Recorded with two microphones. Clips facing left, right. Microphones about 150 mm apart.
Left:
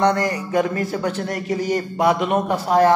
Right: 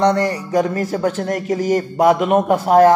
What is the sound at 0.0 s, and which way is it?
A man's voice, 35° right (ahead or behind).